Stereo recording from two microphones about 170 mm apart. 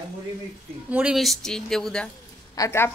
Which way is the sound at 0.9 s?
5° right (ahead or behind).